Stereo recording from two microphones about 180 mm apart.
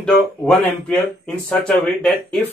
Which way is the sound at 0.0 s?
5° left (ahead or behind).